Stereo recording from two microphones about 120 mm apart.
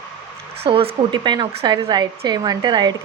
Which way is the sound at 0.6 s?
55° right (ahead or behind).